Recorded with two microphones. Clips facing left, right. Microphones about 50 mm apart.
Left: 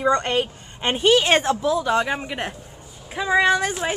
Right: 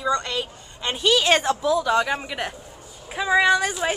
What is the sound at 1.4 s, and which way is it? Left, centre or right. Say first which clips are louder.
Speech: even; centre.